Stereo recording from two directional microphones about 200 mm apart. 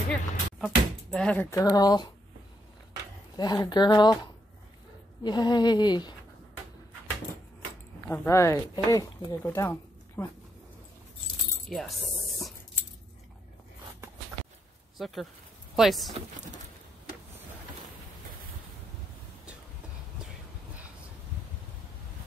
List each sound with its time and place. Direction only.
0.1 s a sound: 5° left (ahead or behind); by 2.1 s 20° left (ahead or behind)
3.3 s speech: 20° left (ahead or behind)
5.2 s speech: 20° left (ahead or behind)
8.1 s speech: 10° left (ahead or behind)
15.0 s speech: centre (ahead or behind)